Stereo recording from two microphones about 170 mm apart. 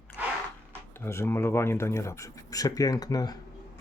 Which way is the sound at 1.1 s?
15° left (ahead or behind).